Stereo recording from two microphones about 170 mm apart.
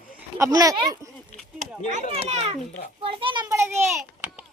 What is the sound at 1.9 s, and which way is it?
A child's voice, 40° right (ahead or behind).